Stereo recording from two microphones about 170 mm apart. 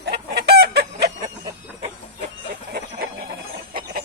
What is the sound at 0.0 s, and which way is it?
Chicken, 75° right (ahead or behind).